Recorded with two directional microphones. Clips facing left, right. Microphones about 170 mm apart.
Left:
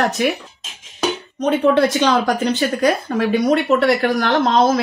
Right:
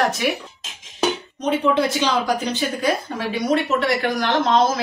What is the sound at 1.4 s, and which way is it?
Speech, 80° left.